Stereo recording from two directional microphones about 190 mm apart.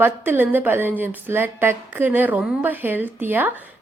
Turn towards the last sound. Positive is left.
turn(degrees=-10)  # may be behind; listen again after turning